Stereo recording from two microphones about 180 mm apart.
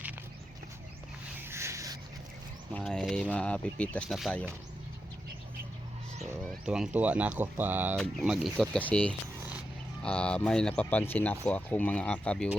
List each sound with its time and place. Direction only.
1.5 s a sound: 15° right (ahead or behind)
2.7 s speech: 5° left (ahead or behind)
6.7 s speech: 5° right (ahead or behind)